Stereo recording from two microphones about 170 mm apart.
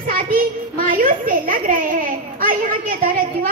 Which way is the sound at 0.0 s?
55° right (ahead or behind).